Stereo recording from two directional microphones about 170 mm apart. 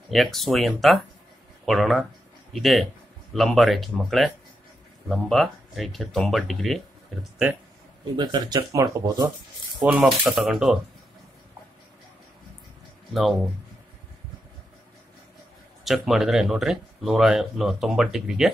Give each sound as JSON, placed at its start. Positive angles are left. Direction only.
{"t": 0.1, "sound": "speech", "side_deg": 0}
{"t": 8.2, "sound": "speech", "side_deg": -25}
{"t": 9.8, "sound": "speech", "side_deg": -5}
{"t": 13.1, "sound": "speech", "side_deg": 0}
{"t": 15.8, "sound": "speech", "side_deg": 0}